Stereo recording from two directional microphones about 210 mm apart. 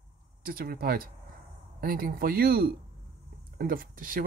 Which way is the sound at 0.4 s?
45° right (ahead or behind).